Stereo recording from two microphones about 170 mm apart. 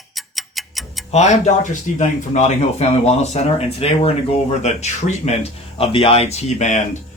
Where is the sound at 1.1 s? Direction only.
45° left (ahead or behind).